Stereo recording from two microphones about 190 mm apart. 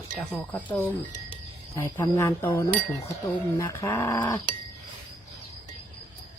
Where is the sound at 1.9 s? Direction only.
15° left (ahead or behind).